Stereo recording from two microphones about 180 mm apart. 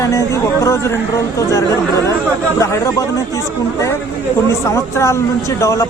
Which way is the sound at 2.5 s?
15° left (ahead or behind).